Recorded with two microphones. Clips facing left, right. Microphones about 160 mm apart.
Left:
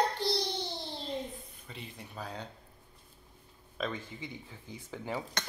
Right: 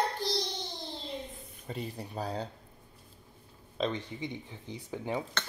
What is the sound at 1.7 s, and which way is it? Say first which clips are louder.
Speech: right 9 dB; 40° right (ahead or behind).